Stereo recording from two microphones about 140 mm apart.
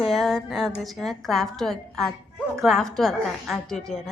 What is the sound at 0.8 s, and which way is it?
A woman's voice, centre (ahead or behind).